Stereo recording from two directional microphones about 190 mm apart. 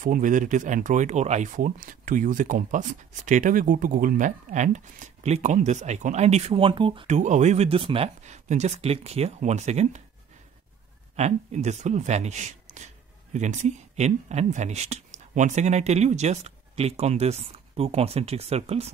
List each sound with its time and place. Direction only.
0.0 s speech: 45° right (ahead or behind); by 7.1 s 25° right (ahead or behind)
7.1 s speech: 40° right (ahead or behind)
11.1 s speech: 35° right (ahead or behind)